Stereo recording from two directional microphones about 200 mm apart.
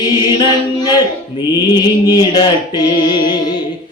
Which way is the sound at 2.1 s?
20° left (ahead or behind).